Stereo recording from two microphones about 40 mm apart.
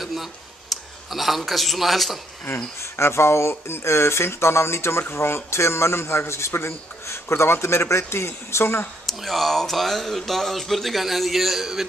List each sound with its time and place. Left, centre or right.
0.0 s a sound: centre
1.4 s a man's voice: centre
2.4 s speech: left
9.0 s a man's voice: centre